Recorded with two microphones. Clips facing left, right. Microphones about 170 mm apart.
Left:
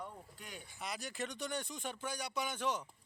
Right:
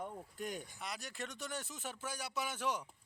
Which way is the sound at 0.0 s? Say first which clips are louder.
Right 6 dB; 45° right (ahead or behind).